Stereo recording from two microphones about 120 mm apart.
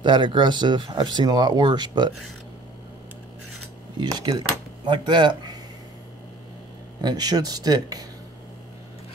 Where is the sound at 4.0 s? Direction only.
35° right (ahead or behind).